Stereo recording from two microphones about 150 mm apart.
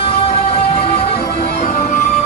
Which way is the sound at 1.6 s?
60° left (ahead or behind).